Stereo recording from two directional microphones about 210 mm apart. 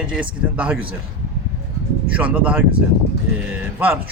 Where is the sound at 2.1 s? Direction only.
5° right (ahead or behind).